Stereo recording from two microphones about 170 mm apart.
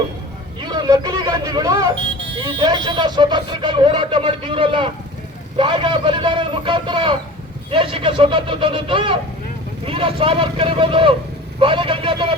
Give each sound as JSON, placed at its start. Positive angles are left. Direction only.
{"t": 0.6, "sound": "vehicle", "side_deg": -25}
{"t": 2.3, "sound": "speech", "side_deg": -30}